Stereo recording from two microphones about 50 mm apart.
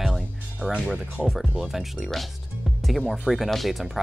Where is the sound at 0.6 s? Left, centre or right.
Centre.